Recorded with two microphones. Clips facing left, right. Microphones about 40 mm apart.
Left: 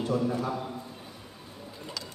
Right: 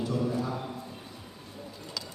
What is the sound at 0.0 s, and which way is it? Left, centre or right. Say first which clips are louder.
Speech: left 2 dB; left.